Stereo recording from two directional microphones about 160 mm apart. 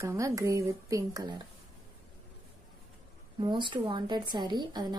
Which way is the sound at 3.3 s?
30° right (ahead or behind).